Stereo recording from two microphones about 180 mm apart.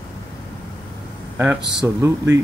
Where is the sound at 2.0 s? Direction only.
15° right (ahead or behind).